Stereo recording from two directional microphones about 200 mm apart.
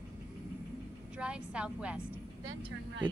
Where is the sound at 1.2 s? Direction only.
5° right (ahead or behind).